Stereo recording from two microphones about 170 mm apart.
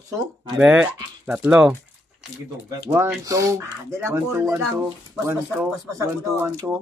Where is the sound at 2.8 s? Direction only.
15° right (ahead or behind).